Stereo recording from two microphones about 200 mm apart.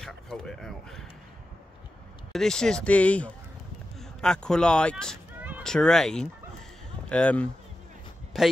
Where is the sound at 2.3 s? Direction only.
Centre (ahead or behind).